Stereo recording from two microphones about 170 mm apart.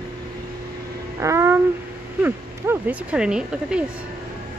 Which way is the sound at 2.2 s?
10° right (ahead or behind).